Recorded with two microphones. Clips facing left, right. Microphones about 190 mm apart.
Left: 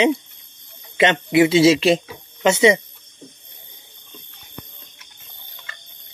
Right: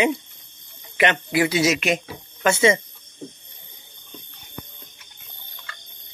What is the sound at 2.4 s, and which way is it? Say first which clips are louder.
Speech: left 3 dB; 20° left (ahead or behind).